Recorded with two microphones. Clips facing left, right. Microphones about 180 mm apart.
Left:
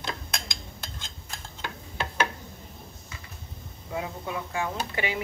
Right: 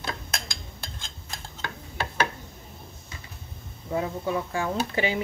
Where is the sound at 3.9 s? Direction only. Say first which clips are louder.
Right 5 dB; 35° right (ahead or behind).